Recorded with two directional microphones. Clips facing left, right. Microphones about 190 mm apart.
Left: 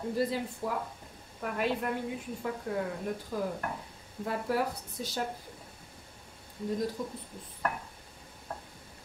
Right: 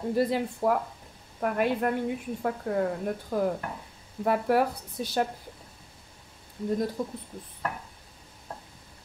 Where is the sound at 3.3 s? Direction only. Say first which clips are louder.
Right 8 dB; 55° right (ahead or behind).